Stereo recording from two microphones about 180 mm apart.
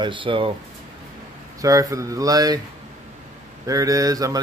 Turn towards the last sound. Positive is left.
turn(degrees=-20)  # may be behind; listen again after turning